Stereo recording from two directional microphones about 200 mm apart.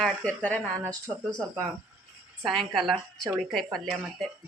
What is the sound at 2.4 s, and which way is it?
A child's voice, centre (ahead or behind).